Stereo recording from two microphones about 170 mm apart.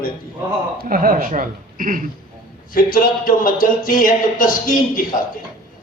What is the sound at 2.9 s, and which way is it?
A man's voice, 55° left (ahead or behind).